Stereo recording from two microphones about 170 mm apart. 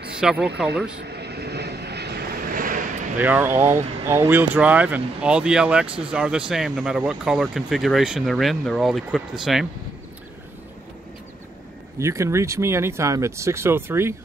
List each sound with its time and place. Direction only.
0.2 s speech: 5° right (ahead or behind)
1.0 s vehicle: 75° right (ahead or behind); by 2.8 s 55° right (ahead or behind)
3.2 s speech: 10° right (ahead or behind)
12.0 s speech: 15° right (ahead or behind)